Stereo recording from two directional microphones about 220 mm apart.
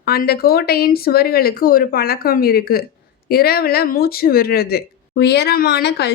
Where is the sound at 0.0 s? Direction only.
45° left (ahead or behind).